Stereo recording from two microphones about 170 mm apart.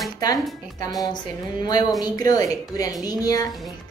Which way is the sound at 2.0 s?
20° left (ahead or behind).